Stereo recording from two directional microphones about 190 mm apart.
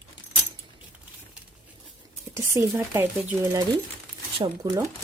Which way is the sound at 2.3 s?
15° right (ahead or behind).